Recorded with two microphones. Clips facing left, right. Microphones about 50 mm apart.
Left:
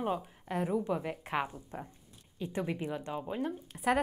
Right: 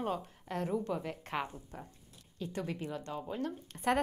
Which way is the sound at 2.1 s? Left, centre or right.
Centre.